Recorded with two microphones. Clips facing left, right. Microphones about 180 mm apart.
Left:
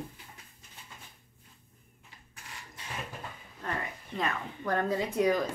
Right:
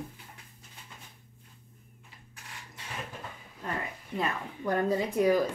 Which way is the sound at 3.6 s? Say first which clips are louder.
Right 1 dB; 10° right (ahead or behind).